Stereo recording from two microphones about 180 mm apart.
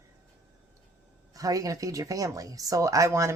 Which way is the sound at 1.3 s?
20° right (ahead or behind).